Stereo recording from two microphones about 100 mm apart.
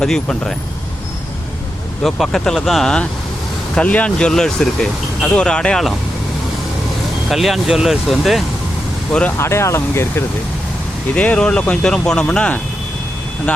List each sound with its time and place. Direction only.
0.0 s speech: 5° left (ahead or behind)
2.0 s speech: centre (ahead or behind)
7.3 s speech: centre (ahead or behind)
9.4 s speech: 25° left (ahead or behind)
11.1 s speech: 10° left (ahead or behind)